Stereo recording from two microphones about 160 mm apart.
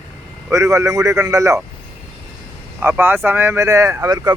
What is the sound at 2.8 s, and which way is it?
Speech, 15° right (ahead or behind).